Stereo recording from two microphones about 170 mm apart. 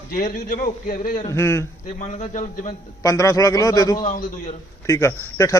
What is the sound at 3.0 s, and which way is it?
Speech, 20° left (ahead or behind).